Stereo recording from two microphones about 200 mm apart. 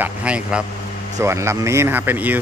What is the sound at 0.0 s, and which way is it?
A man's voice, 5° right (ahead or behind).